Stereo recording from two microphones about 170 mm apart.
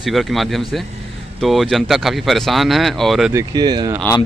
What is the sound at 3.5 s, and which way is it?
Speech, 25° right (ahead or behind).